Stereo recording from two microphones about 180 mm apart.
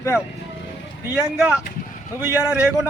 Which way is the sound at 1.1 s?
10° right (ahead or behind).